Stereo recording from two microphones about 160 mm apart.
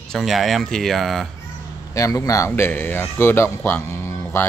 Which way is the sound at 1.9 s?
20° left (ahead or behind).